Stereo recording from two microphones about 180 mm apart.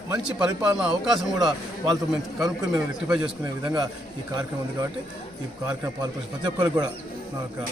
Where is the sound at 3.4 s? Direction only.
20° right (ahead or behind).